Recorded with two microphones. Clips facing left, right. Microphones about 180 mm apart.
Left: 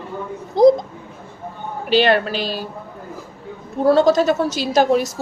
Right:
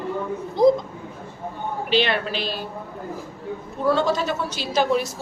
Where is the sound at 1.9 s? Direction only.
40° left (ahead or behind).